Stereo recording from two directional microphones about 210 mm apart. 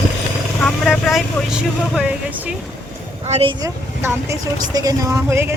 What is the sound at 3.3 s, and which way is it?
A woman's voice, 25° right (ahead or behind).